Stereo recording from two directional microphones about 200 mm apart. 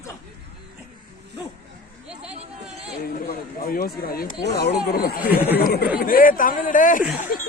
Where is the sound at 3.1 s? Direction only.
45° left (ahead or behind).